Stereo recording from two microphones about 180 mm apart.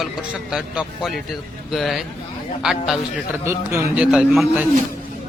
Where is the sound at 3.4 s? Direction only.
15° right (ahead or behind).